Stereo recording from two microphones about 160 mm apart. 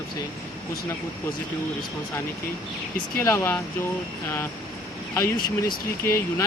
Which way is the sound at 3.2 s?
15° left (ahead or behind).